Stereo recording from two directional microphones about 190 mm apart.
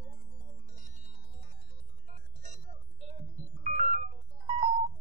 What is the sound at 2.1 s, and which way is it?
Music, 40° right (ahead or behind).